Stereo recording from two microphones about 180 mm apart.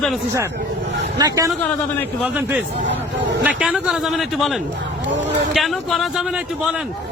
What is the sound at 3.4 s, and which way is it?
Speech, 5° right (ahead or behind).